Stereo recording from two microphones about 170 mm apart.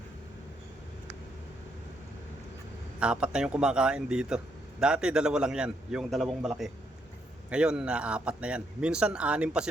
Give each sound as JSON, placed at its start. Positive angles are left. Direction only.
{"t": 3.0, "sound": "a man's voice", "side_deg": -5}